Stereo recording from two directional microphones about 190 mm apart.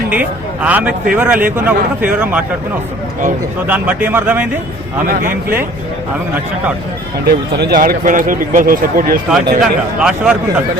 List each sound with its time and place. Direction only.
0.1 s speech: 10° right (ahead or behind)
3.7 s speech: 10° right (ahead or behind)
7.3 s speech: 60° right (ahead or behind)
9.3 s a man's voice: 5° right (ahead or behind)